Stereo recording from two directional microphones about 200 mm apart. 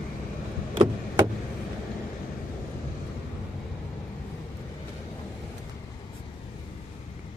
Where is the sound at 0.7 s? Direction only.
25° right (ahead or behind).